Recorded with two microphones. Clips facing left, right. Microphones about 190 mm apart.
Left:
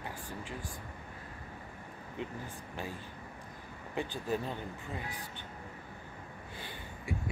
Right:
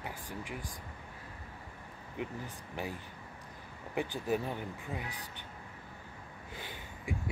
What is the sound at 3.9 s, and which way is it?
Speech, 15° right (ahead or behind).